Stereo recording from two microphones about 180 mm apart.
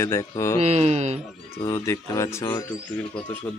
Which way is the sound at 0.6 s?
35° right (ahead or behind).